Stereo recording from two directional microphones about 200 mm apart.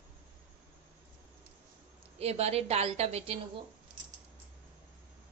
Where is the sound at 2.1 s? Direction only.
30° right (ahead or behind).